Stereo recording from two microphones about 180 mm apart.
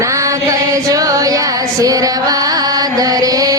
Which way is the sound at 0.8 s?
20° right (ahead or behind).